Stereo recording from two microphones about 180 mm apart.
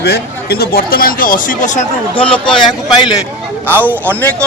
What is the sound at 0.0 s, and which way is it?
Speech, 60° left (ahead or behind).